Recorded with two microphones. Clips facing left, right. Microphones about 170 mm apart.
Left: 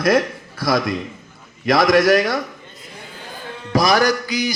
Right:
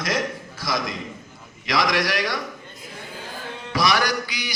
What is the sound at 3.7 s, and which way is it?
Music, 45° left (ahead or behind).